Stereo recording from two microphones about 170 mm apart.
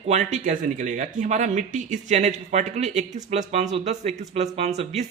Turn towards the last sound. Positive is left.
turn(degrees=-40)  # may be behind; listen again after turning